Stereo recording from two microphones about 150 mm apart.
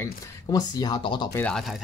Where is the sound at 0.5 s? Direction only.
25° left (ahead or behind).